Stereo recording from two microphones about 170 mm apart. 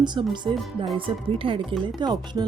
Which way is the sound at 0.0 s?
25° right (ahead or behind).